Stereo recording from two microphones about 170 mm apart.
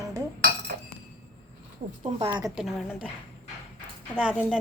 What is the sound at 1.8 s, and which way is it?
Speech, 40° right (ahead or behind).